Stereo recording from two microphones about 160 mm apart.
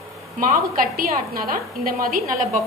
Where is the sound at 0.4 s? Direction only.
60° right (ahead or behind).